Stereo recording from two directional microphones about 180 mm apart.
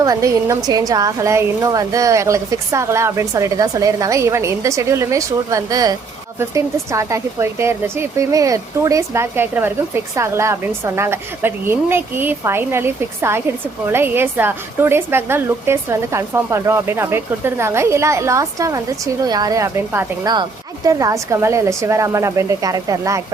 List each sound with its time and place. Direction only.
0.0 s speech: 20° right (ahead or behind)